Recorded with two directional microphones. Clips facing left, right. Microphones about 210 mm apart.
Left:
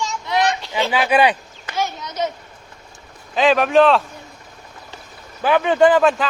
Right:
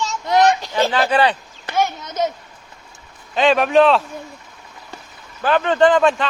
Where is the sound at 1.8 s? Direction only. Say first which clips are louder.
Right 3 dB; 50° right (ahead or behind).